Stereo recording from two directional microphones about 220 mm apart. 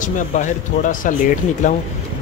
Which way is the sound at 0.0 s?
35° left (ahead or behind).